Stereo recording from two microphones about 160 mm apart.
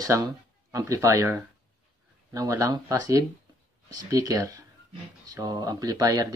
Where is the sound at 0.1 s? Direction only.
20° right (ahead or behind).